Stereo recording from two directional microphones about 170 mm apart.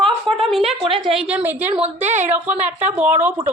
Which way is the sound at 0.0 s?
30° right (ahead or behind).